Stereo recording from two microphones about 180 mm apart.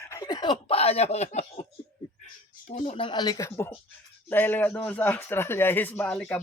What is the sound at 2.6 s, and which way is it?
Speech, 40° left (ahead or behind).